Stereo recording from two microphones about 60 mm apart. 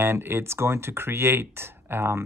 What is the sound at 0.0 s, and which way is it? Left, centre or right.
Speech, right.